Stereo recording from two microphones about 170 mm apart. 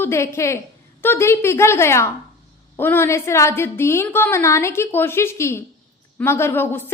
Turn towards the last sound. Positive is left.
turn(degrees=10)  # may be behind; listen again after turning